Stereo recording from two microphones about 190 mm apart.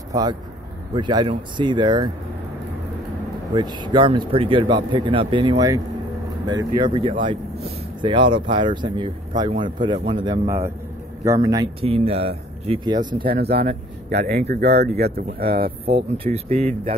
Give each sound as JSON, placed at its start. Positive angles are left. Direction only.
{"t": 0.1, "sound": "speech", "side_deg": -20}
{"t": 3.5, "sound": "speech", "side_deg": -25}
{"t": 11.8, "sound": "speech", "side_deg": -30}
{"t": 13.2, "sound": "speech", "side_deg": -55}
{"t": 15.8, "sound": "speech", "side_deg": -30}